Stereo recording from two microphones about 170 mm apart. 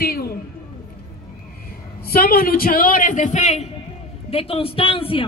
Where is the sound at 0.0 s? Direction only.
65° left (ahead or behind).